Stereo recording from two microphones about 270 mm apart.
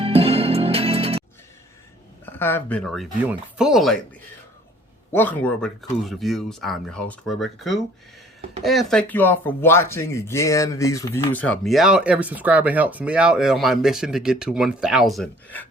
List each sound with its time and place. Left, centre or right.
0.0 s music: right
2.2 s speech: centre
5.1 s speech: centre